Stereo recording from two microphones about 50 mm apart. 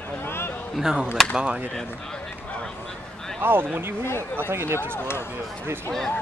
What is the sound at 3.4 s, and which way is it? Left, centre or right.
Speech, right.